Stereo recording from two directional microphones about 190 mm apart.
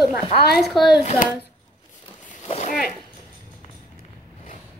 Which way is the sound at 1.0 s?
35° left (ahead or behind).